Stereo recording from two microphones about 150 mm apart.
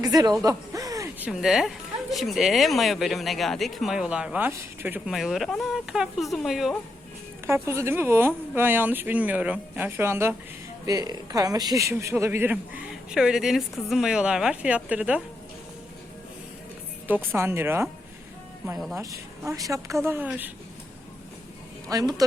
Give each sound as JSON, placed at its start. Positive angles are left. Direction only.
{"t": 0.0, "sound": "speech", "side_deg": -25}
{"t": 0.4, "sound": "a sound", "side_deg": -25}
{"t": 1.2, "sound": "speech", "side_deg": -5}
{"t": 7.4, "sound": "a man's voice", "side_deg": -15}
{"t": 17.3, "sound": "a man's voice", "side_deg": -15}
{"t": 18.9, "sound": "a man's voice", "side_deg": -20}
{"t": 21.8, "sound": "a man's voice", "side_deg": -25}